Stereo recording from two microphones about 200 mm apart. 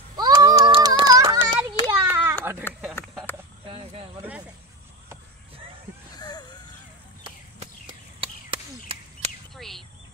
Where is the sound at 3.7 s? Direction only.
25° right (ahead or behind).